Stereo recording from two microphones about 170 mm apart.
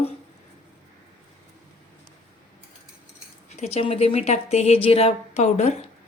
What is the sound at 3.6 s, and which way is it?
Speech, 40° left (ahead or behind).